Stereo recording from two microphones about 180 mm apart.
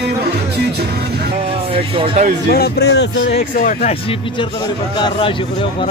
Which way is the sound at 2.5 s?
60° left (ahead or behind).